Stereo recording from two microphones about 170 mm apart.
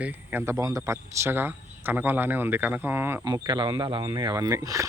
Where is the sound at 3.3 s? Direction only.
25° right (ahead or behind).